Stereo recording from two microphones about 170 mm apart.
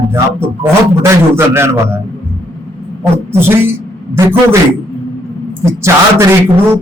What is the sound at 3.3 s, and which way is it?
Speech, 15° right (ahead or behind).